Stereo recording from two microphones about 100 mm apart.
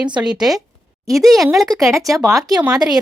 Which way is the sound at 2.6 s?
10° right (ahead or behind).